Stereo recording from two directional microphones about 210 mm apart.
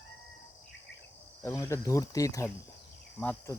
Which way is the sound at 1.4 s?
15° left (ahead or behind).